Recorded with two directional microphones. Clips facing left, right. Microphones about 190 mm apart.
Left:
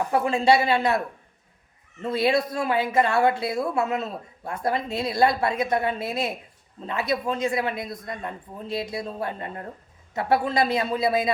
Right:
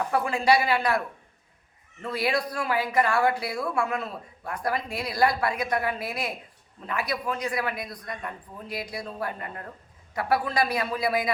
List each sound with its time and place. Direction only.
0.1 s speech: 25° left (ahead or behind)